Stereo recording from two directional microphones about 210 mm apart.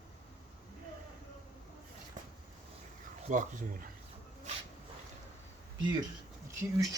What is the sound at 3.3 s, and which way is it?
Speech, 35° right (ahead or behind).